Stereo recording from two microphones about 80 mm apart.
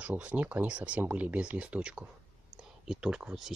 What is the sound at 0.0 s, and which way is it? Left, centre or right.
Speech, centre.